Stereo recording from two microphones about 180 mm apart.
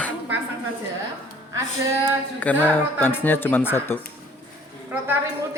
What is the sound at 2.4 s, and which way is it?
Speech, 10° left (ahead or behind).